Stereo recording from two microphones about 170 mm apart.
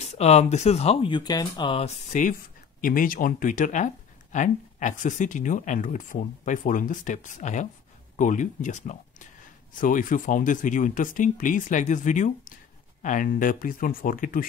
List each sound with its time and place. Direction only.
0.0 s speech: 40° left (ahead or behind)